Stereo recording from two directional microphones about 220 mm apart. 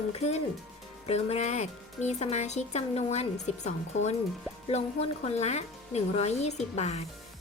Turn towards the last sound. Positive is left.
turn(degrees=30)  # may be behind; listen again after turning